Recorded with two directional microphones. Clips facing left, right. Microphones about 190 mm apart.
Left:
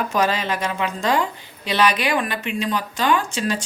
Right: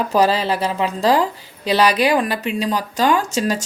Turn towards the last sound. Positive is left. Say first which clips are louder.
# right 3 dB
turn(degrees=-40)  # may be behind; listen again after turning